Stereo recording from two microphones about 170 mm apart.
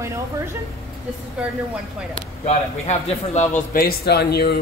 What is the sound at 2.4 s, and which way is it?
A man's voice, 40° left (ahead or behind).